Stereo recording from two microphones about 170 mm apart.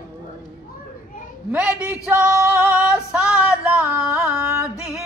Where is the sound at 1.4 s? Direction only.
5° right (ahead or behind).